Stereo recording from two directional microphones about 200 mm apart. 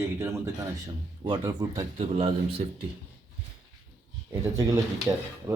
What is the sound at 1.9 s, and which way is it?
Speech, 30° right (ahead or behind).